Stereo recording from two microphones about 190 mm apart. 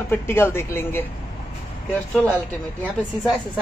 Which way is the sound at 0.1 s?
10° left (ahead or behind).